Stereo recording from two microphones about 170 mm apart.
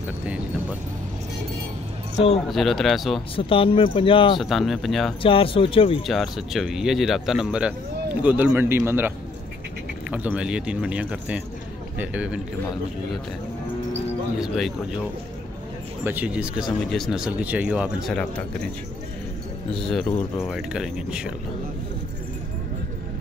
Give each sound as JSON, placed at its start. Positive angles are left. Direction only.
{"t": 2.4, "sound": "speech", "side_deg": 0}
{"t": 3.3, "sound": "speech", "side_deg": 30}
{"t": 4.4, "sound": "speech", "side_deg": 0}
{"t": 5.2, "sound": "speech", "side_deg": 30}
{"t": 6.0, "sound": "speech", "side_deg": 0}
{"t": 10.1, "sound": "speech", "side_deg": -10}
{"t": 14.4, "sound": "speech", "side_deg": 0}
{"t": 16.0, "sound": "speech", "side_deg": -10}
{"t": 19.7, "sound": "speech", "side_deg": 5}